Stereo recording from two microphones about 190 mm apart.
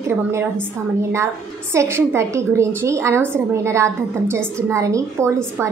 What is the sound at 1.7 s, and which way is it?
A woman's voice, 15° right (ahead or behind).